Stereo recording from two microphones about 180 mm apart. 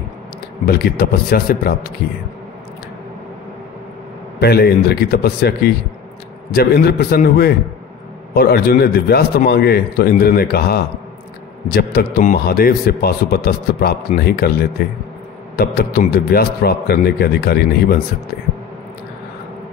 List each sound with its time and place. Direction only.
0.7 s a man's voice: 60° left (ahead or behind)
4.4 s a man's voice: 60° left (ahead or behind)
12.2 s a man's voice: 50° left (ahead or behind)